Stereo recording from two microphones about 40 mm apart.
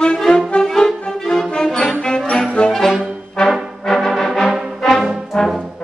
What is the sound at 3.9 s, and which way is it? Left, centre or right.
Brass instrument, centre.